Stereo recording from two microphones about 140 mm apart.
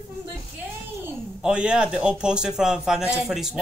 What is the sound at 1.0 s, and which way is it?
Speech, 5° right (ahead or behind).